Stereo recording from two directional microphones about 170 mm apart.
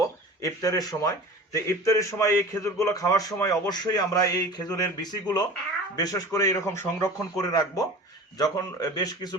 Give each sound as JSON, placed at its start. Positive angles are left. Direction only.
{"t": 0.0, "sound": "a man's voice", "side_deg": 20}